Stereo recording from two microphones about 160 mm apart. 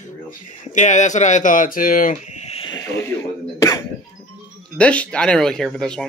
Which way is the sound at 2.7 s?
15° left (ahead or behind).